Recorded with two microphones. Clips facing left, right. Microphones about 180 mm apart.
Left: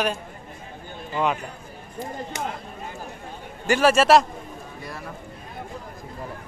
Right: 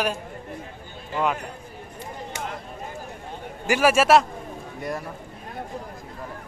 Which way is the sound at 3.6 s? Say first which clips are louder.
Left 1 dB; 5° right (ahead or behind).